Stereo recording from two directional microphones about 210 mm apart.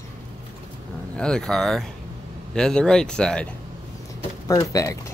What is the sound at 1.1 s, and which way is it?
Speech, 5° left (ahead or behind).